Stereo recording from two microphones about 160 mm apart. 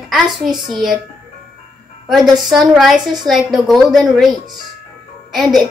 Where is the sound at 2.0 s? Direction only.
Centre (ahead or behind).